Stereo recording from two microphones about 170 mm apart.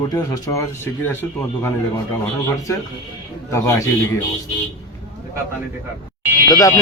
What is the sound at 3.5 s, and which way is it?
Speech, 20° left (ahead or behind).